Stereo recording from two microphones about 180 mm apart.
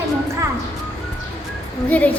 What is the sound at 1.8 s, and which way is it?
Speech, 10° left (ahead or behind).